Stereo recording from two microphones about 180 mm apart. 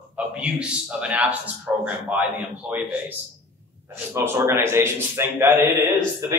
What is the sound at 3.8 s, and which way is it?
A man's voice, 15° right (ahead or behind).